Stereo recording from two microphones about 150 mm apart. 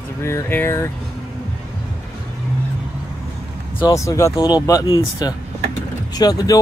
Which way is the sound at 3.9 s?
20° left (ahead or behind).